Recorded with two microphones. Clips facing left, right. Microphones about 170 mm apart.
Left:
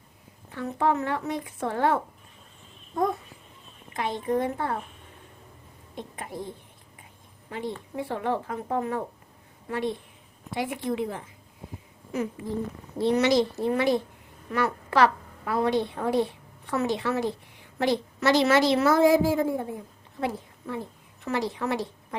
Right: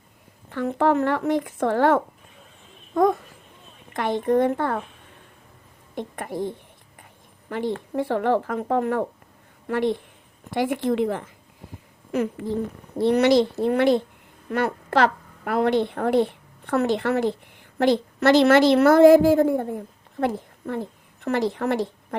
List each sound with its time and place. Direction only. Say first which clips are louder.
0.5 s speech: right 5 dB; 65° right (ahead or behind)
2.9 s a child's voice: right 7 dB; 90° right
3.9 s a woman's voice: right 6 dB; 65° right (ahead or behind)
5.9 s a woman's voice: right 7 dB; 60° right (ahead or behind)
7.5 s a woman's voice: right 7 dB; 65° right (ahead or behind)